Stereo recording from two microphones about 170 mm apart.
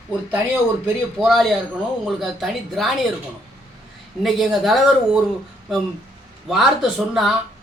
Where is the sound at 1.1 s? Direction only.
Centre (ahead or behind).